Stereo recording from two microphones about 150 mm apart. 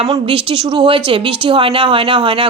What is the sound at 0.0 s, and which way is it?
Speech, 35° right (ahead or behind).